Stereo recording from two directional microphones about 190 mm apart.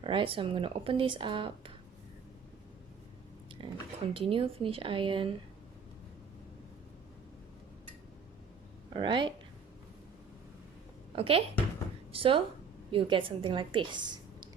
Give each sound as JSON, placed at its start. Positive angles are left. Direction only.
{"t": 0.0, "sound": "speech", "side_deg": -25}
{"t": 3.5, "sound": "speech", "side_deg": -25}
{"t": 8.9, "sound": "speech", "side_deg": -25}
{"t": 11.1, "sound": "a woman's voice", "side_deg": -30}